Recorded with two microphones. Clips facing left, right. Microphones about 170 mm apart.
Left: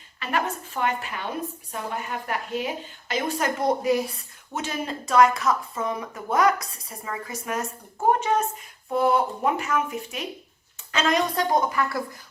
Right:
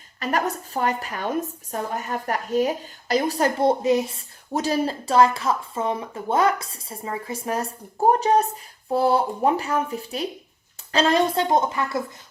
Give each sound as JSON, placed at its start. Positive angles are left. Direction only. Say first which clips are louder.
{"t": 0.2, "sound": "a woman's voice", "louder": "right 3 dB", "side_deg": -40}
{"t": 4.5, "sound": "a woman's voice", "louder": "right 7 dB", "side_deg": -35}